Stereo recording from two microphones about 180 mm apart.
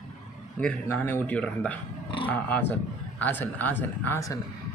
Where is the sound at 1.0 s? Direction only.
10° left (ahead or behind).